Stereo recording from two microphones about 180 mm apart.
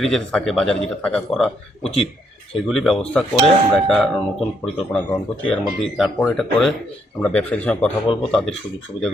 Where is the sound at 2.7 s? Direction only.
Centre (ahead or behind).